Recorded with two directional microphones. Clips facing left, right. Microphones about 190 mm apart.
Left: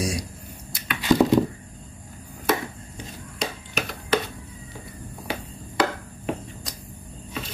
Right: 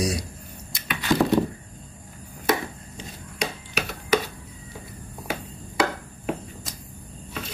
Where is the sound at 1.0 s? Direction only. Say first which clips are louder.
Left 3 dB; 10° left (ahead or behind).